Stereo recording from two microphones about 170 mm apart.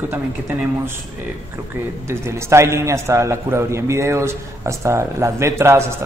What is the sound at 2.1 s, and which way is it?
A man's voice, 15° right (ahead or behind).